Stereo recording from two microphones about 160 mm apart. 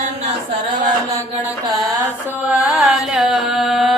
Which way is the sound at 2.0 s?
5° right (ahead or behind).